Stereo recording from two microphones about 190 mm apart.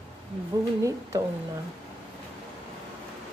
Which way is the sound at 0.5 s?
15° right (ahead or behind).